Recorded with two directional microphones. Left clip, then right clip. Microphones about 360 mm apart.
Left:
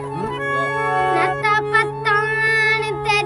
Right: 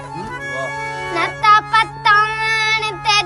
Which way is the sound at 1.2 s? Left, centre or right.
Centre.